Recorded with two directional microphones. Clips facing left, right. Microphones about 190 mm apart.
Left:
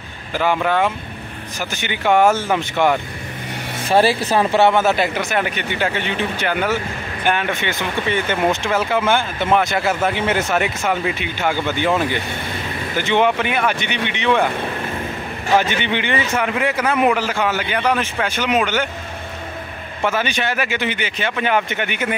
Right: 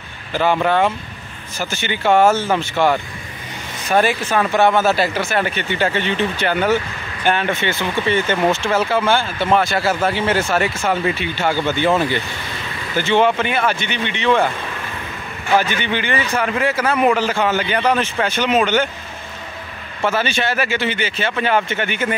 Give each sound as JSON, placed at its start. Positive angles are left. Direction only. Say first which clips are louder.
{"t": 0.3, "sound": "a man's voice", "louder": "right 2 dB", "side_deg": 10}
{"t": 3.9, "sound": "a man's voice", "louder": "left 1 dB", "side_deg": 30}
{"t": 12.9, "sound": "a man's voice", "louder": "right 2 dB", "side_deg": 15}
{"t": 15.6, "sound": "a man's voice", "louder": "even", "side_deg": 25}
{"t": 20.1, "sound": "a man's voice", "louder": "right 1 dB", "side_deg": 15}